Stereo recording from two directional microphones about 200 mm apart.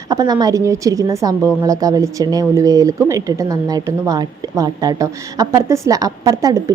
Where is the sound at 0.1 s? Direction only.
20° right (ahead or behind).